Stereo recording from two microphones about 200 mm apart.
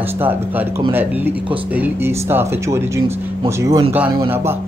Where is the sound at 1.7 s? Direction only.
10° right (ahead or behind).